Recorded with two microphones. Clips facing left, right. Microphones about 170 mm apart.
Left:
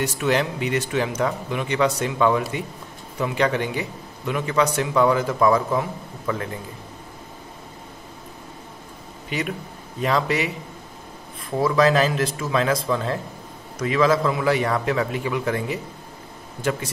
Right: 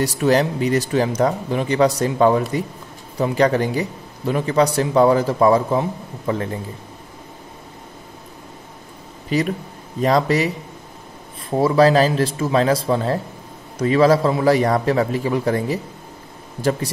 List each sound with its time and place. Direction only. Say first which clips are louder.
0.0 s a man's voice: right 5 dB; 35° right (ahead or behind)
9.3 s a man's voice: right 7 dB; 35° right (ahead or behind)
11.5 s a man's voice: right 4 dB; 30° right (ahead or behind)